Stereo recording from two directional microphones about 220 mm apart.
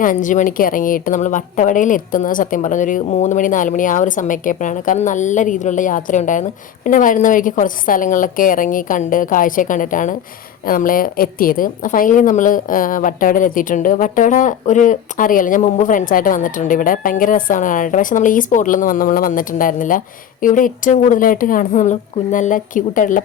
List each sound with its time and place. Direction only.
0.0 s a woman's voice: 35° left (ahead or behind)